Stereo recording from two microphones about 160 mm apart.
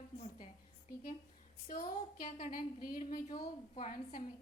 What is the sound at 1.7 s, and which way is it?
A woman's voice, 65° left (ahead or behind).